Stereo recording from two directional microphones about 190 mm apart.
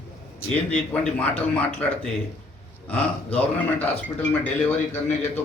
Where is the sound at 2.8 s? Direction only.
10° left (ahead or behind).